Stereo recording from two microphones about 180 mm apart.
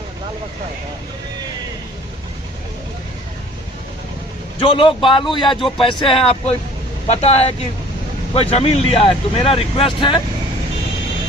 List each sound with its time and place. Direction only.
4.6 s speech: 25° left (ahead or behind)